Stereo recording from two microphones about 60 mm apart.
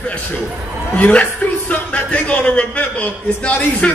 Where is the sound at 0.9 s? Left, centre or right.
Left.